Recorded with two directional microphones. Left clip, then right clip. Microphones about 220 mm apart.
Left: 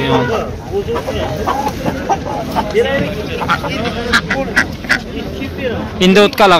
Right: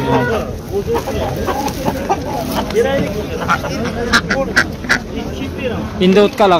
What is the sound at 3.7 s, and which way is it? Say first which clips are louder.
Speech: left 1 dB; 50° right (ahead or behind).